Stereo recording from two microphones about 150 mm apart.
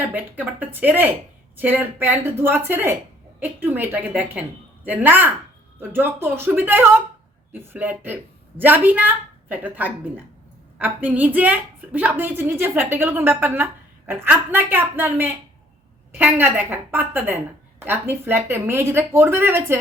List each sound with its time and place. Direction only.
0.0 s a woman's voice: 10° right (ahead or behind)